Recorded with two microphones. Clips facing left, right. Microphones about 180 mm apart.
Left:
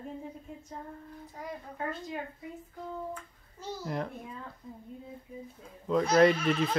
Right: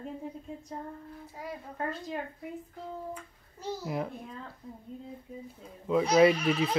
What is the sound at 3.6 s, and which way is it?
Speech, 5° right (ahead or behind).